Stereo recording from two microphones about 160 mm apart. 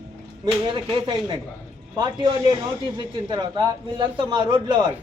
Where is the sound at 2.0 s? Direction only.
30° right (ahead or behind).